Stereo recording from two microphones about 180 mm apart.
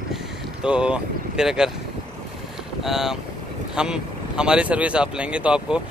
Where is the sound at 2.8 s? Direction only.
Centre (ahead or behind).